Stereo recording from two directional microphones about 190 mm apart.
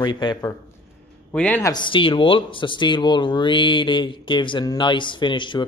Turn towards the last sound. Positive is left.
turn(degrees=25)  # may be behind; listen again after turning